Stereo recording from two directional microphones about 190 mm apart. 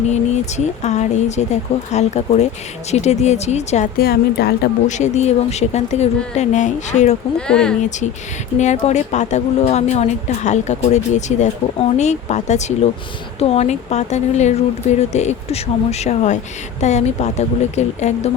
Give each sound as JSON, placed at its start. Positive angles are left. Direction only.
{"t": 0.1, "sound": "a woman's voice", "side_deg": 35}
{"t": 3.9, "sound": "speech", "side_deg": 55}
{"t": 4.9, "sound": "a woman's voice", "side_deg": 40}
{"t": 7.3, "sound": "speech", "side_deg": 5}
{"t": 7.9, "sound": "a woman's voice", "side_deg": 40}